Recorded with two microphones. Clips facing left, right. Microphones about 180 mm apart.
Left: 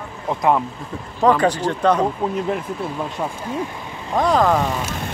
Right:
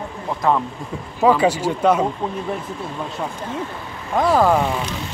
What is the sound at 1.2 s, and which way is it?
Speech, 10° right (ahead or behind).